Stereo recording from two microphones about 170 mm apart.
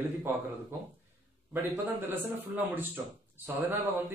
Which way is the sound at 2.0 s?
10° right (ahead or behind).